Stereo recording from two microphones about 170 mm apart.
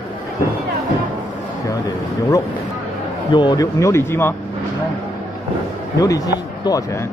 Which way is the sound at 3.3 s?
25° left (ahead or behind).